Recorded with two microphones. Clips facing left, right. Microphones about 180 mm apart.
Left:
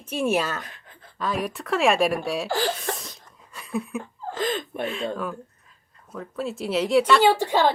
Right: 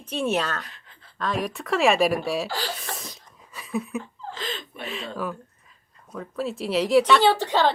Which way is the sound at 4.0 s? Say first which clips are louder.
Left 7 dB; 50° left (ahead or behind).